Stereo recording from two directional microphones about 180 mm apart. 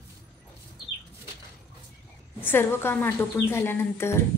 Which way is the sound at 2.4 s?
10° left (ahead or behind).